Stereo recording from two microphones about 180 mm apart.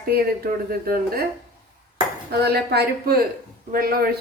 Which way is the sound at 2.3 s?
60° right (ahead or behind).